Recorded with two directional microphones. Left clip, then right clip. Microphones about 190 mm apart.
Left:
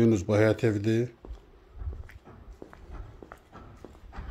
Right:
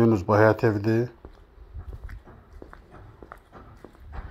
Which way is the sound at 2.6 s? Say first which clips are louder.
Right 2 dB; 5° right (ahead or behind).